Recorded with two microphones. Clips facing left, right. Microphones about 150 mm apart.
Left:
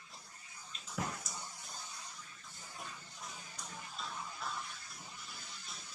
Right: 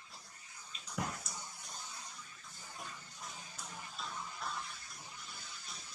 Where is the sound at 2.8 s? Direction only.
Centre (ahead or behind).